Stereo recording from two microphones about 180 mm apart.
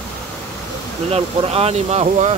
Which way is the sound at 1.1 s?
35° right (ahead or behind).